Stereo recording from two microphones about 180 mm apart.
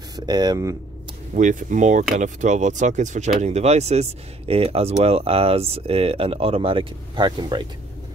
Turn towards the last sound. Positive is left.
turn(degrees=-25)  # may be behind; listen again after turning